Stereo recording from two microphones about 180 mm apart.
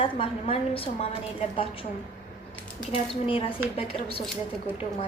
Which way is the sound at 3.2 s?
30° left (ahead or behind).